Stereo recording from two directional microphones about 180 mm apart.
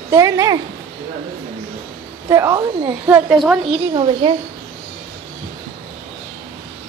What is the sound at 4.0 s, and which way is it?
Speech, 30° right (ahead or behind).